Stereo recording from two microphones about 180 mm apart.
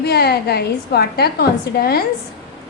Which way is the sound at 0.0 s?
65° left (ahead or behind).